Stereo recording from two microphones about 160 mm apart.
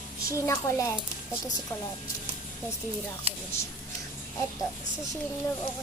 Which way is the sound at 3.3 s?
40° right (ahead or behind).